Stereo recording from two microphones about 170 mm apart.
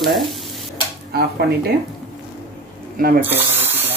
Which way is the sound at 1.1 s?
70° right (ahead or behind).